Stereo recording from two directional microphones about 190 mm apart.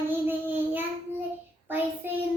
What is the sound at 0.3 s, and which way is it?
Child singing, 10° right (ahead or behind).